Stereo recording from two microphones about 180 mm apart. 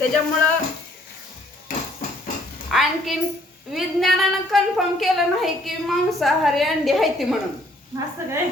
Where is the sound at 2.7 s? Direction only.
Centre (ahead or behind).